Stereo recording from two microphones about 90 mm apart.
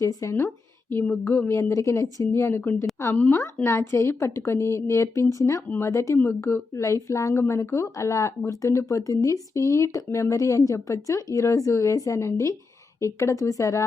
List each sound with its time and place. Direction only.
0.0 s speech: 40° left (ahead or behind)
0.3 s speech: 25° left (ahead or behind)